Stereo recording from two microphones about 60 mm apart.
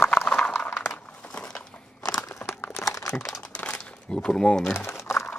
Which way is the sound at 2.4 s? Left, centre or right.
Left.